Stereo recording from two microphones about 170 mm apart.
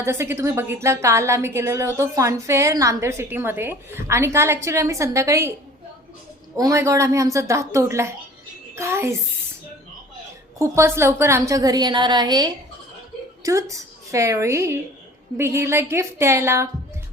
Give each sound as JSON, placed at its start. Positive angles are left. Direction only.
{"t": 0.0, "sound": "a woman's voice", "side_deg": -15}
{"t": 6.6, "sound": "a woman's voice", "side_deg": -20}
{"t": 10.6, "sound": "a woman's voice", "side_deg": -15}